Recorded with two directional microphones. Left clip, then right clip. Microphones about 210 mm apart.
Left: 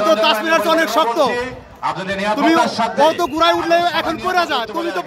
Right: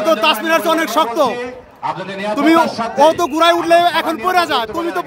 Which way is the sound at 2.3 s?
20° right (ahead or behind).